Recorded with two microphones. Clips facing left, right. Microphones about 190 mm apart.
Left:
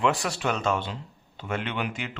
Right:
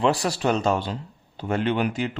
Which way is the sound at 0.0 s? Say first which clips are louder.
Right 4 dB; 35° right (ahead or behind).